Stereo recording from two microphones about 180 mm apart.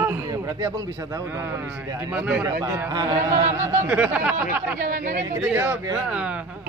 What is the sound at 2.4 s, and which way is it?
A man's voice, 20° right (ahead or behind).